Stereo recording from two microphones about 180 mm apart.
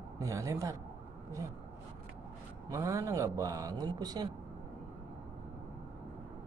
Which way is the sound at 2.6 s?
20° right (ahead or behind).